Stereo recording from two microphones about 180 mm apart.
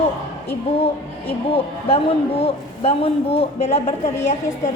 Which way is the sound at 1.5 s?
30° left (ahead or behind).